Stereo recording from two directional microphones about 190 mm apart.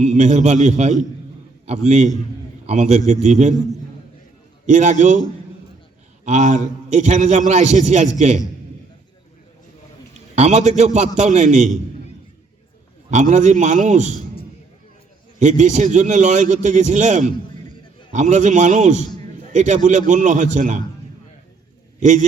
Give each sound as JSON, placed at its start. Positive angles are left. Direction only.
{"t": 0.0, "sound": "a man's voice", "side_deg": -35}
{"t": 4.6, "sound": "a man's voice", "side_deg": -40}
{"t": 6.2, "sound": "a man's voice", "side_deg": -40}
{"t": 10.3, "sound": "a man's voice", "side_deg": -35}
{"t": 13.1, "sound": "a man's voice", "side_deg": -40}
{"t": 15.4, "sound": "a man's voice", "side_deg": -40}